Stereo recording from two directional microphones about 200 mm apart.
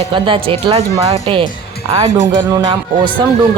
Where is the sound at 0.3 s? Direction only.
25° right (ahead or behind).